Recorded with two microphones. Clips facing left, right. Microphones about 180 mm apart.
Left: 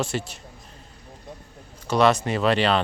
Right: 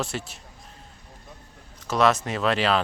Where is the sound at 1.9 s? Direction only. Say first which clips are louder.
Left 2 dB; centre (ahead or behind).